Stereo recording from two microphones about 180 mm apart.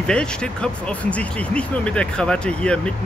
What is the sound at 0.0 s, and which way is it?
Speech, 5° left (ahead or behind).